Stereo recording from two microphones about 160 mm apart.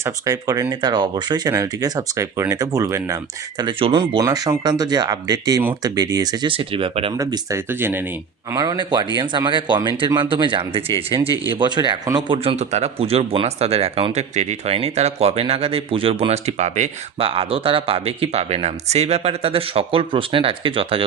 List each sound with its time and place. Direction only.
0.0 s speech: 20° right (ahead or behind)
3.6 s speech: 30° right (ahead or behind)
7.2 s speech: 20° right (ahead or behind)
8.5 s speech: 25° right (ahead or behind)
12.4 s speech: 40° right (ahead or behind)